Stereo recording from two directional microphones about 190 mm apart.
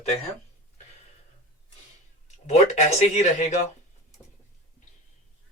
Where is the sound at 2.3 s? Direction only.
35° left (ahead or behind).